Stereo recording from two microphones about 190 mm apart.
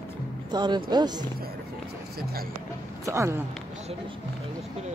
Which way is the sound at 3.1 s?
15° right (ahead or behind).